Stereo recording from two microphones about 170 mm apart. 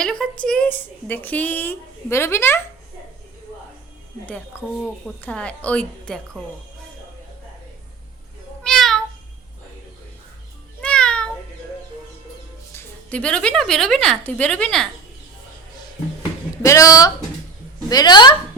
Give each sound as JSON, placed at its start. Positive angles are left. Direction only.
{"t": 0.0, "sound": "a woman's voice", "side_deg": 5}
{"t": 4.3, "sound": "a woman's voice", "side_deg": 5}
{"t": 8.6, "sound": "meow", "side_deg": 0}
{"t": 10.8, "sound": "meow", "side_deg": 5}
{"t": 12.7, "sound": "a woman's voice", "side_deg": 10}
{"t": 16.6, "sound": "speech", "side_deg": 20}